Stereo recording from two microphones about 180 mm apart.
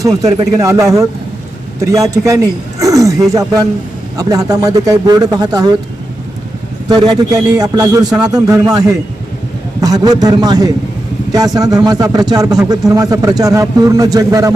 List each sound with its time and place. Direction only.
0.0 s a man's voice: 20° right (ahead or behind)
6.8 s a man's voice: 25° right (ahead or behind)